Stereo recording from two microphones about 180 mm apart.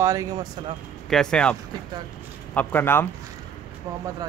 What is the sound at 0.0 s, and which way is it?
Speech, 20° right (ahead or behind).